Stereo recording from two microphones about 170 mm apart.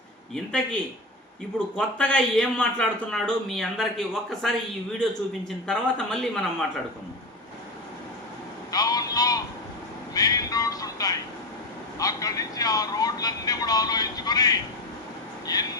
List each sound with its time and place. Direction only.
0.3 s a man's voice: 5° left (ahead or behind)
5.6 s a man's voice: 5° left (ahead or behind)
8.7 s a sound: 20° left (ahead or behind)
10.2 s music: 20° left (ahead or behind)
11.9 s speech: 20° left (ahead or behind)
15.5 s a sound: 20° left (ahead or behind)